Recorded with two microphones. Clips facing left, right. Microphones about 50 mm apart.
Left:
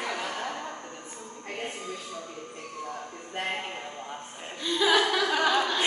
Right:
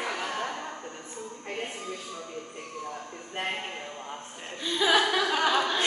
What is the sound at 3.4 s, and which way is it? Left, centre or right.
Speech, centre.